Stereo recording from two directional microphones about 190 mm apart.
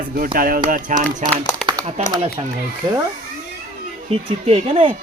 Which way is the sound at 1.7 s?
20° right (ahead or behind).